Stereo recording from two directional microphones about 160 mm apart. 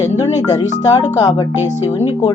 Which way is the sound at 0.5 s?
25° left (ahead or behind).